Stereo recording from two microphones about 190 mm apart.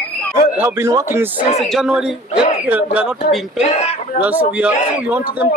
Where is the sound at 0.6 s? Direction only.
15° right (ahead or behind).